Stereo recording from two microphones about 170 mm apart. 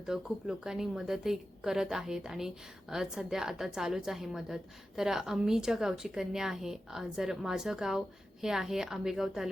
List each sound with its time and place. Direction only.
0.0 s a woman's voice: 5° right (ahead or behind)